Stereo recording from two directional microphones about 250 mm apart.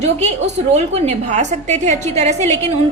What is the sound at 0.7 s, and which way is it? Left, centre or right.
A woman's voice, right.